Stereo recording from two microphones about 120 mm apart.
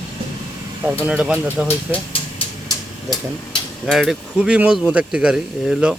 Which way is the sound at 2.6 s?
35° left (ahead or behind).